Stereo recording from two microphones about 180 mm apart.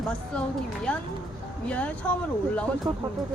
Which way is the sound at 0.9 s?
5° left (ahead or behind).